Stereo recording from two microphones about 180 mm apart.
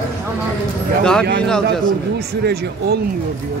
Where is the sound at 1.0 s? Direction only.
5° left (ahead or behind).